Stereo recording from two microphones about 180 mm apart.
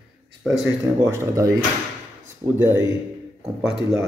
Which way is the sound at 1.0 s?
15° right (ahead or behind).